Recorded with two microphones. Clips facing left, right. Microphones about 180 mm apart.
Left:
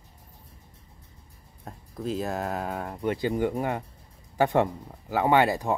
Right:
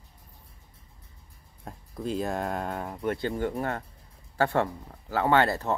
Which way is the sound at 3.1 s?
15° left (ahead or behind).